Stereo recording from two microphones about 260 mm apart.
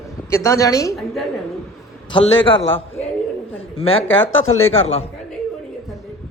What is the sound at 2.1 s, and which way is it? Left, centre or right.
Speech, centre.